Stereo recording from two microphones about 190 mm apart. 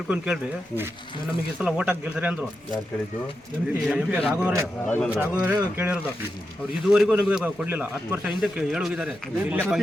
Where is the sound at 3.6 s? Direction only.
5° right (ahead or behind).